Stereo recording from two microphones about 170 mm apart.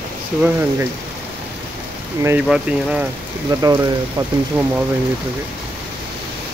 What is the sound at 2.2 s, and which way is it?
Speech, 15° right (ahead or behind).